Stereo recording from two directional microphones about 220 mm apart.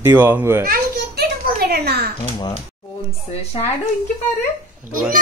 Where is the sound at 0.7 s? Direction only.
45° right (ahead or behind).